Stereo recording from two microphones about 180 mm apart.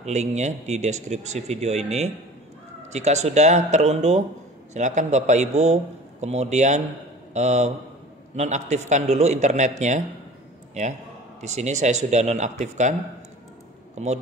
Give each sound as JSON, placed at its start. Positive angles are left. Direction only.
{"t": 0.0, "sound": "a man's voice", "side_deg": -40}
{"t": 14.0, "sound": "speech", "side_deg": -40}